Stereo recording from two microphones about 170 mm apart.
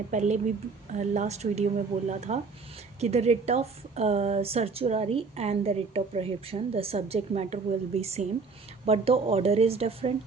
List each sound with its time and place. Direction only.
0.1 s a woman's voice: 45° right (ahead or behind)